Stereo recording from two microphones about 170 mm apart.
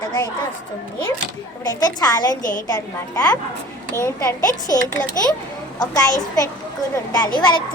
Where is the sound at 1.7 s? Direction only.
20° left (ahead or behind).